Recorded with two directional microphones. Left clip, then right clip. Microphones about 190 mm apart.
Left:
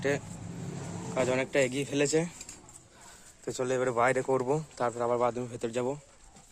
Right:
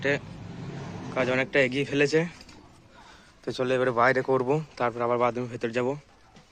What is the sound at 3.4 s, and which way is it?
Speech, 5° left (ahead or behind).